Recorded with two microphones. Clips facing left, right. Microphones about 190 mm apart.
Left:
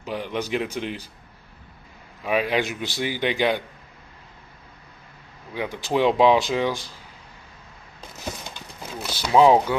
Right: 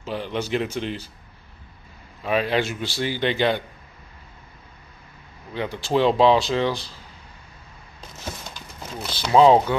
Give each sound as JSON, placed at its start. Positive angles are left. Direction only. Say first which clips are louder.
{"t": 0.0, "sound": "speech", "louder": "right 1 dB", "side_deg": 15}
{"t": 2.2, "sound": "speech", "louder": "right 1 dB", "side_deg": 10}
{"t": 5.5, "sound": "speech", "louder": "right 2 dB", "side_deg": 15}
{"t": 9.0, "sound": "speech", "louder": "right 1 dB", "side_deg": 10}